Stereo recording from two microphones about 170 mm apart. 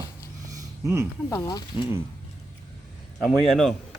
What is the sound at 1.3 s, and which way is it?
Speech, 20° left (ahead or behind).